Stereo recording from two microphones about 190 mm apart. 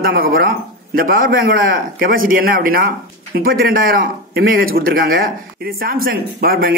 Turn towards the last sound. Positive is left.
turn(degrees=-50)  # may be behind; listen again after turning